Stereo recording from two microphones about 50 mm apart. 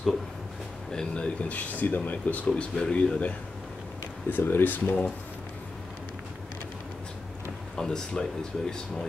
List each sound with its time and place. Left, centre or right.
0.9 s speech: left
4.3 s speech: left
7.7 s speech: centre